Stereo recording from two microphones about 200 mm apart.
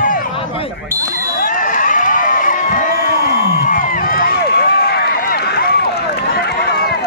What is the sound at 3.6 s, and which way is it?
Run, 40° left (ahead or behind).